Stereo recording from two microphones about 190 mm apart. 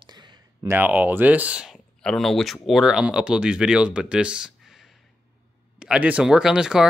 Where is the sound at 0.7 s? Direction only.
10° right (ahead or behind).